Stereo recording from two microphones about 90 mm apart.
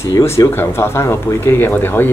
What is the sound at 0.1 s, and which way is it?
Speech, 30° left (ahead or behind).